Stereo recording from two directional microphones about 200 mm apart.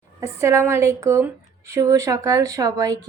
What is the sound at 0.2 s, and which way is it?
Speech, 15° right (ahead or behind).